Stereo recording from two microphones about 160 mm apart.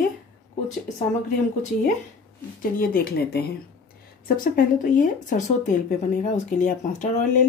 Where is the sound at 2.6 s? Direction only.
65° left (ahead or behind).